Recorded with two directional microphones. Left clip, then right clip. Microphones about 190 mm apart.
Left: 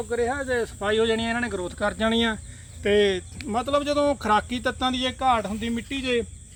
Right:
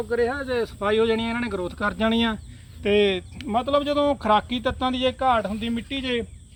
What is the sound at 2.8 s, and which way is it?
Speech, 40° right (ahead or behind).